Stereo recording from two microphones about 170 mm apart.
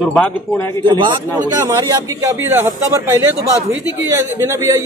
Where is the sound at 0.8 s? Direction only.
25° right (ahead or behind).